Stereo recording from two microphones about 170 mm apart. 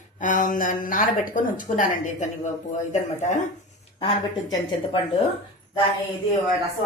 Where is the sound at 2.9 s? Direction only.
45° left (ahead or behind).